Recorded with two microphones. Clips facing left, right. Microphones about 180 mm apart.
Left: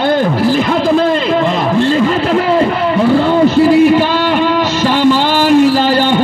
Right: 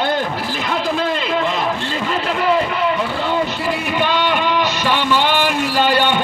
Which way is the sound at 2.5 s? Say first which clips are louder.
Left 6 dB; 35° left (ahead or behind).